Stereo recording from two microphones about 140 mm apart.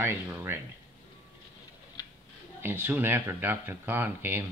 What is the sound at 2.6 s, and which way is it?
Speech, 15° right (ahead or behind).